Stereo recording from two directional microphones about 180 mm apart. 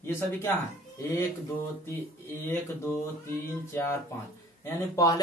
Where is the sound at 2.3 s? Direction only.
15° left (ahead or behind).